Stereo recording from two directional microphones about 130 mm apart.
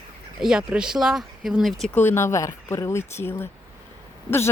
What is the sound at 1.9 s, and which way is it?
Speech, 15° left (ahead or behind).